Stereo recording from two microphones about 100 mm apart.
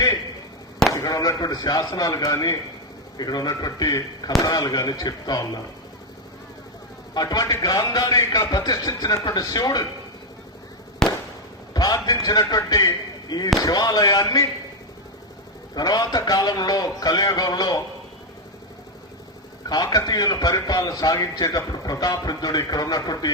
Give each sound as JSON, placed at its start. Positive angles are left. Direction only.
{"t": 0.9, "sound": "a man's voice", "side_deg": 35}
{"t": 7.1, "sound": "a man's voice", "side_deg": 40}
{"t": 11.0, "sound": "fireworks", "side_deg": 5}
{"t": 11.7, "sound": "a sound", "side_deg": 45}
{"t": 12.0, "sound": "a man's voice", "side_deg": 40}
{"t": 15.7, "sound": "a man's voice", "side_deg": 45}
{"t": 19.6, "sound": "a man's voice", "side_deg": 40}